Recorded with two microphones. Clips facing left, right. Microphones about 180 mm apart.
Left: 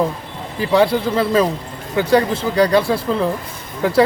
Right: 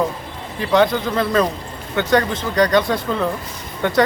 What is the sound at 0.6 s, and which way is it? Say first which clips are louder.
Speech: left 1 dB; 5° left (ahead or behind).